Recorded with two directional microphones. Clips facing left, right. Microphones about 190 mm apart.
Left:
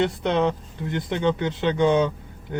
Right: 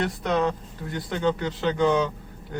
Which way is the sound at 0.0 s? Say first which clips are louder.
Left 3 dB; 25° left (ahead or behind).